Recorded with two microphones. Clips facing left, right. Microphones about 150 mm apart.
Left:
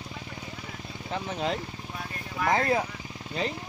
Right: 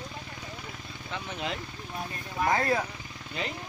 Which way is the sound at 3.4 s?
35° left (ahead or behind).